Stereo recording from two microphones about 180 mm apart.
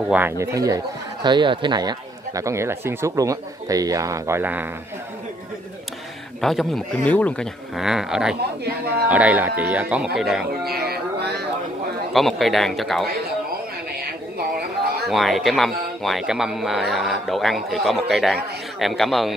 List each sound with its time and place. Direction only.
0.1 s speech: 10° right (ahead or behind)
6.4 s speech: centre (ahead or behind)
10.6 s a sound: 60° right (ahead or behind)
12.1 s speech: centre (ahead or behind)
15.0 s speech: centre (ahead or behind)